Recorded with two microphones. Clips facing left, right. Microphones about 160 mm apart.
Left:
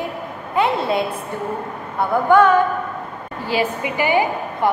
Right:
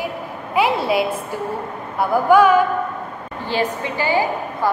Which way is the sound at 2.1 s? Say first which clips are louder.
Right 1 dB; 10° right (ahead or behind).